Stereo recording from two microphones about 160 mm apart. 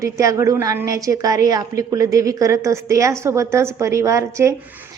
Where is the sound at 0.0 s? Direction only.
20° right (ahead or behind).